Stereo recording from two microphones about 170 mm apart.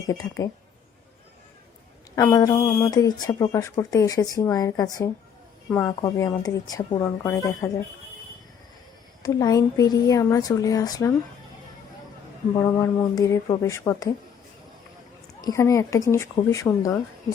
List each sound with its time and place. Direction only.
0.1 s speech: 20° left (ahead or behind)
2.3 s speech: 20° left (ahead or behind)
9.2 s speech: 20° left (ahead or behind)
12.5 s speech: 20° left (ahead or behind)
15.4 s speech: 20° left (ahead or behind)